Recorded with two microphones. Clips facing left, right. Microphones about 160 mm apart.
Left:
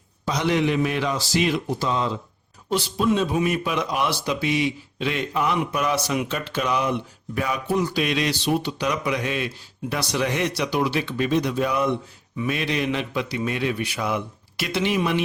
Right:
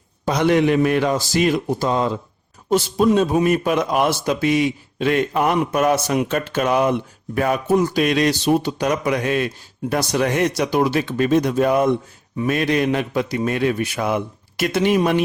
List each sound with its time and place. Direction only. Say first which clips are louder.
0.3 s speech: right 6 dB; 55° right (ahead or behind)